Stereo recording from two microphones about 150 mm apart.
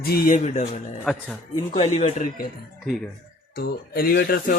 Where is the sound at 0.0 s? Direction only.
90° left.